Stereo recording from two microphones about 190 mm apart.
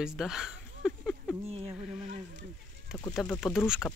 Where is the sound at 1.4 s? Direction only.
30° right (ahead or behind).